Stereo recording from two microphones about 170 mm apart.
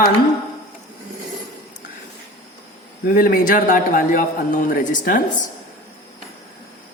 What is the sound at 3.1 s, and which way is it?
A man's voice, 55° left (ahead or behind).